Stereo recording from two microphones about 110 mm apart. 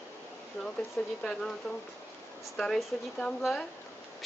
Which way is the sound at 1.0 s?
15° left (ahead or behind).